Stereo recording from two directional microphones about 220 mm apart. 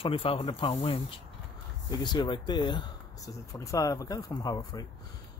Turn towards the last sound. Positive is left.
turn(degrees=15)  # may be behind; listen again after turning